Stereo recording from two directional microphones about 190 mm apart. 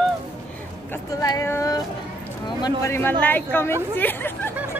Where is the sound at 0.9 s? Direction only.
15° left (ahead or behind).